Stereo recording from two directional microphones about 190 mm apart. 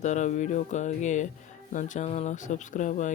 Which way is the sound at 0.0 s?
40° left (ahead or behind).